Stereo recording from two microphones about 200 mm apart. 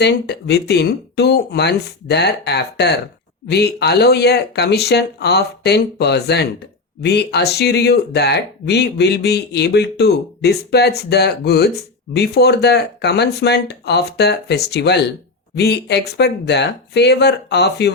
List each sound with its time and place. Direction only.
0.0 s speech: 55° left (ahead or behind)